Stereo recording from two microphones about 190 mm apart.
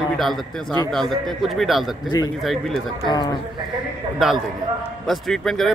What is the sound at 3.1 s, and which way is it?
Speech, 20° left (ahead or behind).